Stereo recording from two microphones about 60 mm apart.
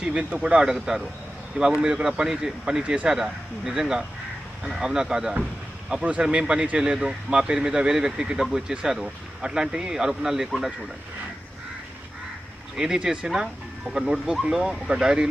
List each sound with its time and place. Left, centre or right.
0.0 s speech: centre
12.7 s speech: centre